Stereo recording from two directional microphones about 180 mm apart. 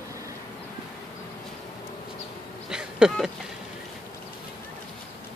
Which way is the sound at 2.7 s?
5° right (ahead or behind).